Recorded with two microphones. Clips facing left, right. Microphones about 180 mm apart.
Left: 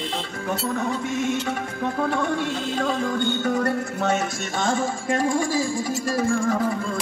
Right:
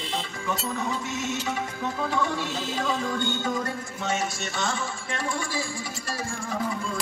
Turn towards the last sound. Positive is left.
turn(degrees=50)  # may be behind; listen again after turning